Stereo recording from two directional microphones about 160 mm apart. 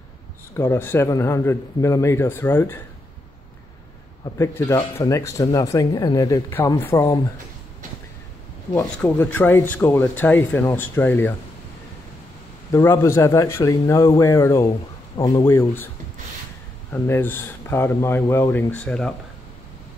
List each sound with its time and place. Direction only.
0.6 s speech: 15° left (ahead or behind)
4.2 s speech: 15° left (ahead or behind)
8.7 s speech: 10° left (ahead or behind)
12.7 s speech: 15° left (ahead or behind)
15.4 s speech: 15° left (ahead or behind)
16.9 s speech: 15° left (ahead or behind)